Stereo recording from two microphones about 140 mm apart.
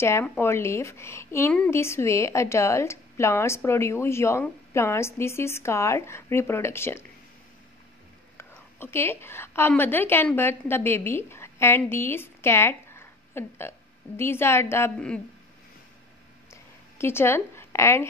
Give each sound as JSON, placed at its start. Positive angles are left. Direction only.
{"t": 0.0, "sound": "a woman's voice", "side_deg": 20}
{"t": 8.4, "sound": "a woman's voice", "side_deg": 15}
{"t": 17.0, "sound": "a woman's voice", "side_deg": 15}